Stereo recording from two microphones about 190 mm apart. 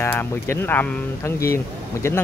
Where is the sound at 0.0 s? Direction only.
10° left (ahead or behind).